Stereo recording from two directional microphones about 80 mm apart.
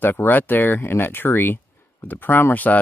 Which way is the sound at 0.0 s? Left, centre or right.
Left.